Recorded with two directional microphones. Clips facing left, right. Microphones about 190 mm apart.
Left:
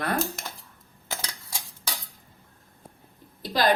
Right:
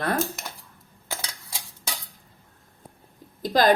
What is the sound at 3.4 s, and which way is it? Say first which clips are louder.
Speech: right 5 dB; 45° right (ahead or behind).